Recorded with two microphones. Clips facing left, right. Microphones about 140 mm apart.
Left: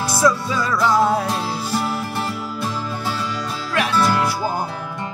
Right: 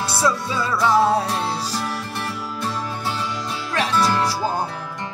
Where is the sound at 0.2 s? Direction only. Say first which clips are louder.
Left 4 dB; 25° right (ahead or behind).